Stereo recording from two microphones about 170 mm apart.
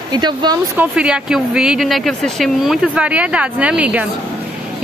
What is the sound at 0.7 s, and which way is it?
Speech, 10° right (ahead or behind).